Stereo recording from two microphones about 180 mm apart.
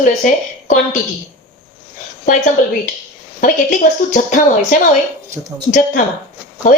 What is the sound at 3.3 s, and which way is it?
Speech, 50° left (ahead or behind).